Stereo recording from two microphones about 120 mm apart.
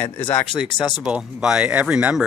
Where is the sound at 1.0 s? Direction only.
5° right (ahead or behind).